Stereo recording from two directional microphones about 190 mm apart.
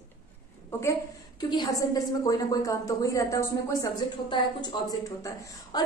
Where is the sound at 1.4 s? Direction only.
20° left (ahead or behind).